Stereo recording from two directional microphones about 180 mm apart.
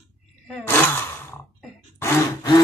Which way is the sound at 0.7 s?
10° left (ahead or behind).